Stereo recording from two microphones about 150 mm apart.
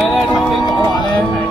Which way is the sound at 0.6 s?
30° left (ahead or behind).